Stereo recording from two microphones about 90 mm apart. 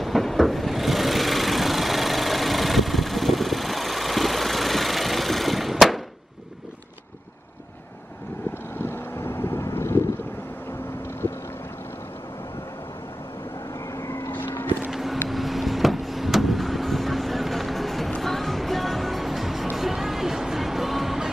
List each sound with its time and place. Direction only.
0.0 s sewing machine: centre (ahead or behind)
8.9 s vehicle: 25° left (ahead or behind)
13.9 s vehicle: 35° left (ahead or behind)
14.9 s vehicle: centre (ahead or behind)
19.7 s music: 5° right (ahead or behind)